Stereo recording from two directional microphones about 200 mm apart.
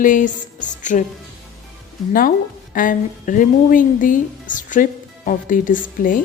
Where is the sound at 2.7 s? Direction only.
40° left (ahead or behind).